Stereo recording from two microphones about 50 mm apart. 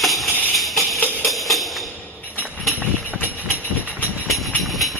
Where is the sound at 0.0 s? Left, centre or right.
Centre.